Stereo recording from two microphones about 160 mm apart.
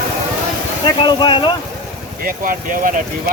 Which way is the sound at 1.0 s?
30° left (ahead or behind).